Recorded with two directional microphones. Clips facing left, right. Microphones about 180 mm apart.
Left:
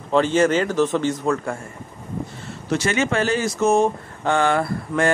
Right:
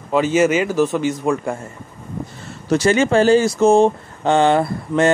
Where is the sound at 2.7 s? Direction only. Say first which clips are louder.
Right 6 dB; 35° right (ahead or behind).